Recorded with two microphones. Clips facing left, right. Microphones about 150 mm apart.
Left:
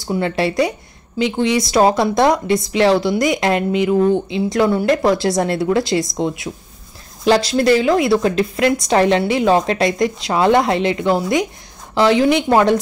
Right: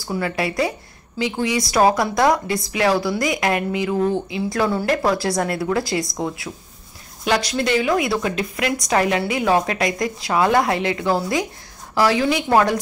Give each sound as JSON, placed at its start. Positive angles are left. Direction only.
{"t": 0.0, "sound": "a woman's voice", "side_deg": 25}
{"t": 7.2, "sound": "a woman's voice", "side_deg": 30}